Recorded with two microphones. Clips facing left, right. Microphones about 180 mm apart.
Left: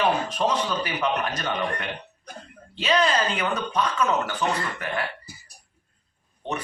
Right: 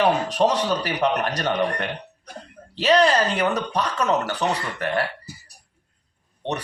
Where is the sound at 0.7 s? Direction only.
35° right (ahead or behind).